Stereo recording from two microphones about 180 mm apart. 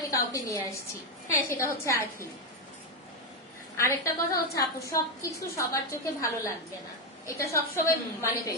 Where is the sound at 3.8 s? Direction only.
15° left (ahead or behind).